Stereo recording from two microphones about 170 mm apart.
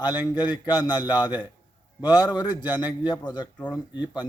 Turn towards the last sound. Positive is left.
turn(degrees=25)  # may be behind; listen again after turning